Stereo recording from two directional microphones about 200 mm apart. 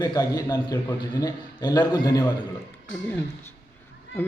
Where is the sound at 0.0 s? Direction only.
20° left (ahead or behind).